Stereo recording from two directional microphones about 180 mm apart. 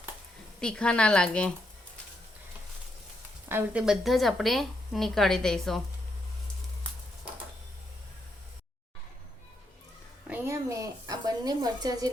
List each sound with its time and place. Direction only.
0.6 s a woman's voice: 5° left (ahead or behind)
3.5 s a woman's voice: 5° right (ahead or behind)
10.2 s a sound: 10° right (ahead or behind)